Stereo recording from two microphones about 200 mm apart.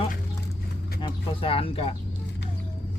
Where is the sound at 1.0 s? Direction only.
25° left (ahead or behind).